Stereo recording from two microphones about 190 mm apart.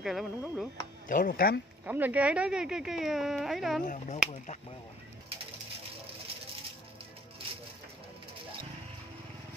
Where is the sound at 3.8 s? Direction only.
40° left (ahead or behind).